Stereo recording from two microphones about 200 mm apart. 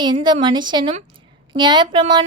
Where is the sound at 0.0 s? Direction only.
20° right (ahead or behind).